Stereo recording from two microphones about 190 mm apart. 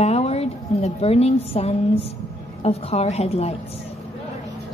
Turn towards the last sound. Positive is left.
turn(degrees=35)  # may be behind; listen again after turning